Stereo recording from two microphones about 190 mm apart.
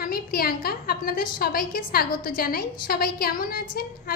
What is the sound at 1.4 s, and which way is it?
A woman's voice, 50° left (ahead or behind).